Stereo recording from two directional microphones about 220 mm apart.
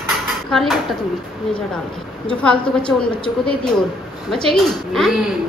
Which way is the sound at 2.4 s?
5° left (ahead or behind).